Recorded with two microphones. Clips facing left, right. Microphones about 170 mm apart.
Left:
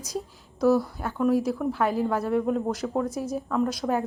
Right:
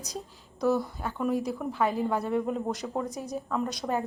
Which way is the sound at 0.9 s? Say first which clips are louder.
Left 5 dB; 5° left (ahead or behind).